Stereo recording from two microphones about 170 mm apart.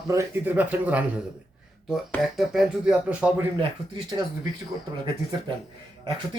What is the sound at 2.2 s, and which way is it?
Speech, centre (ahead or behind).